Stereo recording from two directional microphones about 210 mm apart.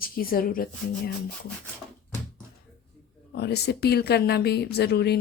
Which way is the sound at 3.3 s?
50° left (ahead or behind).